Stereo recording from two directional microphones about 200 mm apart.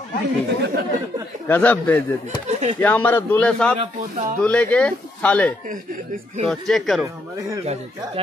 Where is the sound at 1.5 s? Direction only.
10° left (ahead or behind).